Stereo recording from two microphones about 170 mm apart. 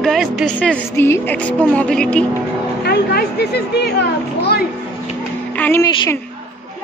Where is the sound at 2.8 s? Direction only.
70° left (ahead or behind).